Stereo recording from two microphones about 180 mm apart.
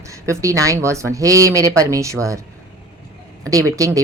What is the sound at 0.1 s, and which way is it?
Speech, 15° right (ahead or behind).